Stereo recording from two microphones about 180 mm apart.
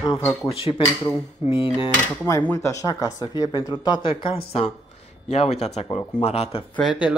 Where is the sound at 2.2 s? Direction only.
15° left (ahead or behind); by 6.7 s 35° left (ahead or behind).